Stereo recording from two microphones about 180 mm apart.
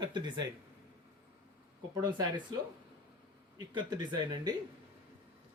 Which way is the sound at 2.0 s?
25° right (ahead or behind).